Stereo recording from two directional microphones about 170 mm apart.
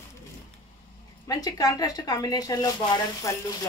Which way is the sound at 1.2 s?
20° left (ahead or behind).